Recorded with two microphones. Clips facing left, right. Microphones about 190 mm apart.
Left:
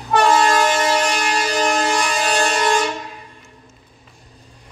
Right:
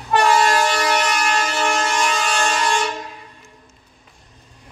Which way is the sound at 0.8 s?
30° left (ahead or behind).